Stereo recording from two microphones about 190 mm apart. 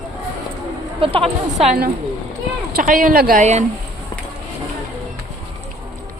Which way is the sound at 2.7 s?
45° right (ahead or behind).